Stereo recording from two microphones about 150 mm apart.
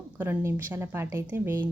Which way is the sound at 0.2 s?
15° right (ahead or behind).